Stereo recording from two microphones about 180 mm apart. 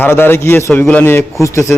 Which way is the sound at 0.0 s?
10° left (ahead or behind).